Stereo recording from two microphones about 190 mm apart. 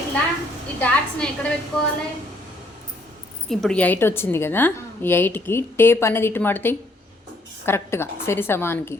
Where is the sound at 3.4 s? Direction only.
Centre (ahead or behind).